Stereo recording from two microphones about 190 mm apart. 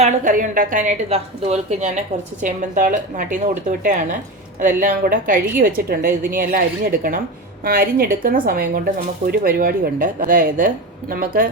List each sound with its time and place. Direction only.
0.0 s a woman's voice: 45° right (ahead or behind)